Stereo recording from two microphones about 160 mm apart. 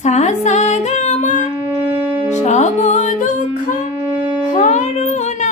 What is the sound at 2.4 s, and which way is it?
Music, 45° left (ahead or behind).